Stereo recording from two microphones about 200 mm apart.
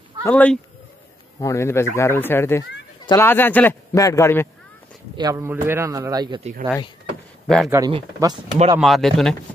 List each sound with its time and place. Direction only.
0.2 s a man's voice: 5° left (ahead or behind)
5.1 s a man's voice: 15° right (ahead or behind)
7.4 s speech: centre (ahead or behind)
7.7 s speech: 20° right (ahead or behind)
8.7 s speech: centre (ahead or behind)